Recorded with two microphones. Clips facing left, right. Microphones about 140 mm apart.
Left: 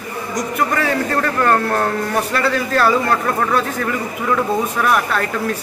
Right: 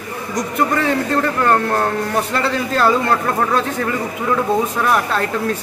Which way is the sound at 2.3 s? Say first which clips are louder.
Left 1 dB; 20° right (ahead or behind).